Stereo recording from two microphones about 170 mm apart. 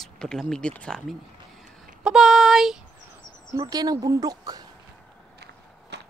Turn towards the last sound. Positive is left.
turn(degrees=-80)